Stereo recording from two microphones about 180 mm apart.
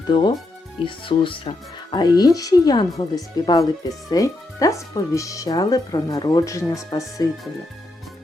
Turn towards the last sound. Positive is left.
turn(degrees=20)  # may be behind; listen again after turning